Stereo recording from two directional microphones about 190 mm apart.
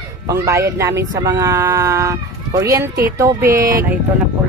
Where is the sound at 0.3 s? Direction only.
15° right (ahead or behind).